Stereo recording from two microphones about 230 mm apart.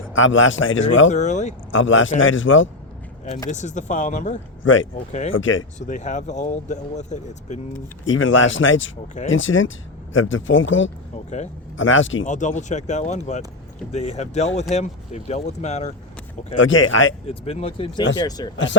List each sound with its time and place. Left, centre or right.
0.1 s speech: left
1.1 s speech: left
1.7 s speech: left
3.5 s speech: left
4.6 s speech: left
5.9 s speech: left
8.0 s speech: left
12.2 s speech: left
16.6 s speech: left
17.2 s speech: left